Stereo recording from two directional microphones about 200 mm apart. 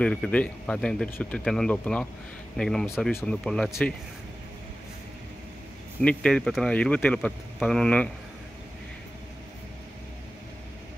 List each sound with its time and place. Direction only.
0.0 s speech: 5° left (ahead or behind)
5.9 s speech: 5° left (ahead or behind)